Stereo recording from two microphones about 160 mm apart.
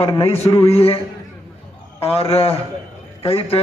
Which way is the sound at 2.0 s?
40° left (ahead or behind).